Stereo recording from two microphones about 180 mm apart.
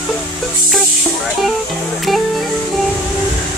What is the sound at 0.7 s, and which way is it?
Music, centre (ahead or behind).